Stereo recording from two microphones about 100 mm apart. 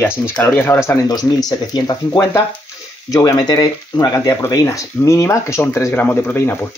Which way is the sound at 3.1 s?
40° left (ahead or behind).